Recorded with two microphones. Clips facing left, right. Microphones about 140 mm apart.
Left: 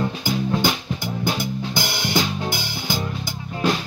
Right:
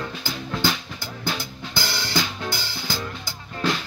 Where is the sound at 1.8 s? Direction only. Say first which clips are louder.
Left 2 dB; 20° left (ahead or behind).